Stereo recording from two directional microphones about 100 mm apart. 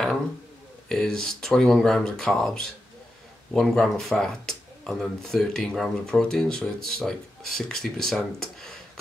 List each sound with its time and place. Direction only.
0.8 s speech: 5° left (ahead or behind)